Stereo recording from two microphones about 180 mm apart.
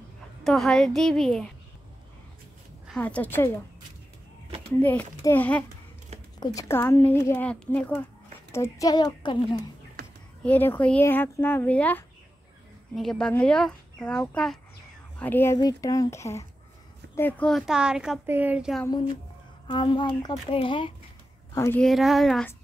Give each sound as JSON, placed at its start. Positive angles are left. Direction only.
{"t": 0.4, "sound": "a woman's voice", "side_deg": 0}
{"t": 3.0, "sound": "speech", "side_deg": 10}
{"t": 4.8, "sound": "speech", "side_deg": 10}
{"t": 10.4, "sound": "a woman's voice", "side_deg": 10}
{"t": 19.7, "sound": "a woman's voice", "side_deg": 25}
{"t": 21.5, "sound": "speech", "side_deg": 15}
{"t": 21.8, "sound": "a woman's voice", "side_deg": 0}